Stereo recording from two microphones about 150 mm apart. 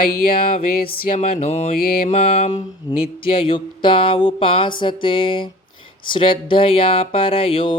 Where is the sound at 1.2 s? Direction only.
40° left (ahead or behind).